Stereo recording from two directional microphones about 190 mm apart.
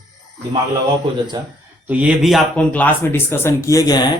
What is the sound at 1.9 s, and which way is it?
Speech, 5° right (ahead or behind).